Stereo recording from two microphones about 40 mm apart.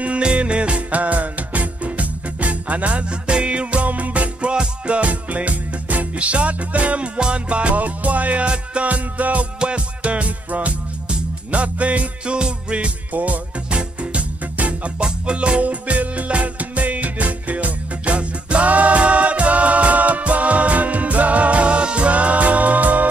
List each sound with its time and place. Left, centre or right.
0.2 s music: right
12.4 s music: right
13.7 s music: right